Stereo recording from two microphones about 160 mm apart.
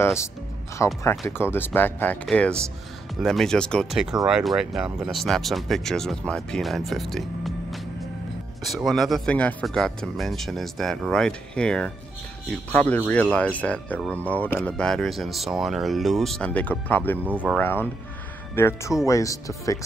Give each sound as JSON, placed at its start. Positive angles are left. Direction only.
{"t": 0.0, "sound": "speech", "side_deg": 15}
{"t": 17.2, "sound": "speech", "side_deg": -10}
{"t": 17.5, "sound": "speech", "side_deg": 10}